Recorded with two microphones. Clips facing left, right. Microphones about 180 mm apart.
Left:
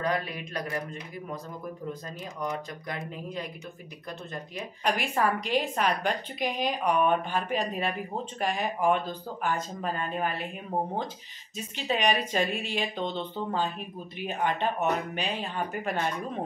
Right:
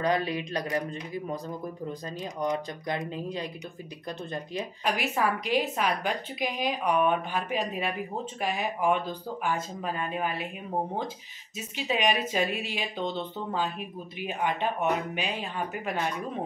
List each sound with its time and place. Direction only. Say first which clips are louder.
0.0 s speech: right 3 dB; 30° right (ahead or behind)
2.4 s speech: right 4 dB; 20° right (ahead or behind)
4.8 s a woman's voice: left 1 dB; 5° right (ahead or behind)
11.7 s a woman's voice: even; 5° right (ahead or behind)